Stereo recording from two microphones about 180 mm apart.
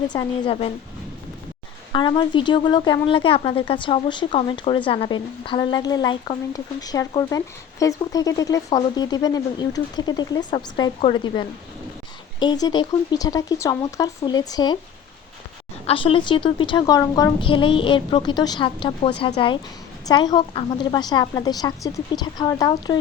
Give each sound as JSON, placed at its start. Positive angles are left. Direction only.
{"t": 0.1, "sound": "speech", "side_deg": 25}
{"t": 1.9, "sound": "speech", "side_deg": 25}
{"t": 15.9, "sound": "speech", "side_deg": 30}
{"t": 17.4, "sound": "speech", "side_deg": 30}